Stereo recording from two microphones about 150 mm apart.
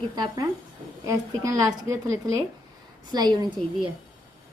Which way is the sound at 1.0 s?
25° right (ahead or behind).